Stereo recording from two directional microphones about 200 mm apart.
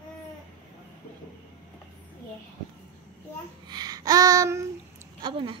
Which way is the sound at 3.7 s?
20° right (ahead or behind).